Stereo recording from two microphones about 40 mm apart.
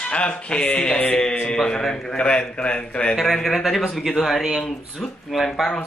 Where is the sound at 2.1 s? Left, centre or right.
Left.